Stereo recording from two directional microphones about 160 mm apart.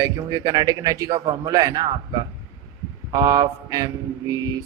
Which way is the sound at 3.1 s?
25° right (ahead or behind).